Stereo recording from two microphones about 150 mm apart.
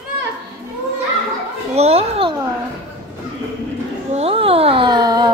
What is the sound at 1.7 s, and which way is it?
Children playing, 45° right (ahead or behind).